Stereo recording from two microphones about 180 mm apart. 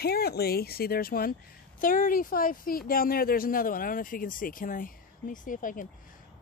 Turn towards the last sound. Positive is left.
turn(degrees=50)  # may be behind; listen again after turning